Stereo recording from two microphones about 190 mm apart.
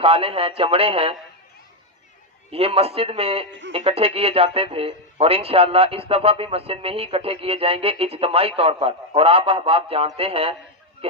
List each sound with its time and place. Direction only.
0.0 s speech: 30° right (ahead or behind)
2.5 s speech: 30° right (ahead or behind)
11.0 s a sound: 30° right (ahead or behind)